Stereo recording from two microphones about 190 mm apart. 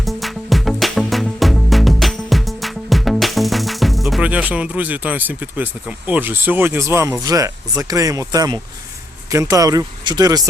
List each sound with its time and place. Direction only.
0.0 s music: centre (ahead or behind)
6.1 s speech: 10° right (ahead or behind)